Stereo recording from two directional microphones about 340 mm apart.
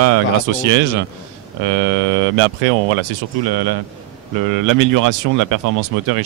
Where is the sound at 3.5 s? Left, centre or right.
Right.